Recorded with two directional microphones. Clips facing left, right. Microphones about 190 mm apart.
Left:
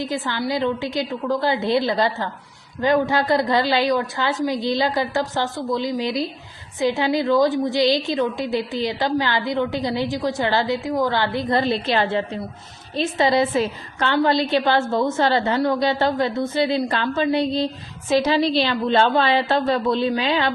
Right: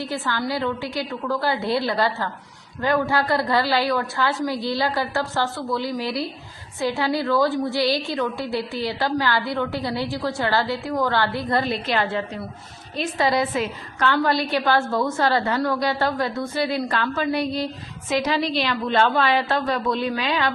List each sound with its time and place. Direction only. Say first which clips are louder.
0.0 s a woman's voice: left 2 dB; 20° left (ahead or behind)